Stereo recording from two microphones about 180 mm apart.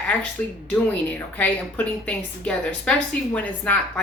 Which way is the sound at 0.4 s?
10° left (ahead or behind).